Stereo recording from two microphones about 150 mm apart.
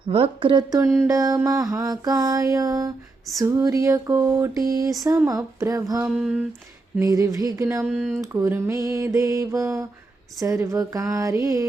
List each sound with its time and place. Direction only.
0.0 s speech: 35° right (ahead or behind)
0.9 s mantra: 20° right (ahead or behind)
6.1 s a sound: 5° right (ahead or behind)
7.0 s mantra: 20° right (ahead or behind)
7.9 s speech: centre (ahead or behind)
8.2 s mantra: 20° right (ahead or behind)